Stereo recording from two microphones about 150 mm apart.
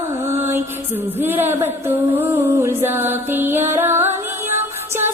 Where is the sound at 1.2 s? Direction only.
15° right (ahead or behind).